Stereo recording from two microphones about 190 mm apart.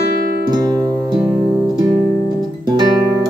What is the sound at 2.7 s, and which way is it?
Music, 20° right (ahead or behind).